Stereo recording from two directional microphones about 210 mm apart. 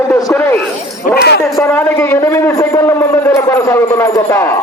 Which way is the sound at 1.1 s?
50° left (ahead or behind).